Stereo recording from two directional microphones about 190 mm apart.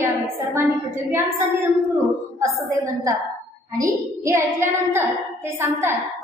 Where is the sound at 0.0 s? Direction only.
10° right (ahead or behind).